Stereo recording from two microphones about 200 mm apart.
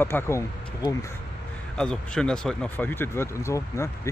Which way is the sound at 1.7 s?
5° left (ahead or behind).